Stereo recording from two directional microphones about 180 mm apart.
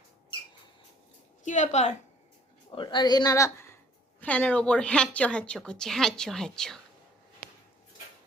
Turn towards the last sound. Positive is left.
turn(degrees=5)  # may be behind; listen again after turning